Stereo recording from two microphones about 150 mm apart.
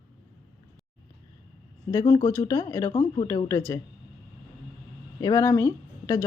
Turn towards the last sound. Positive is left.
turn(degrees=20)  # may be behind; listen again after turning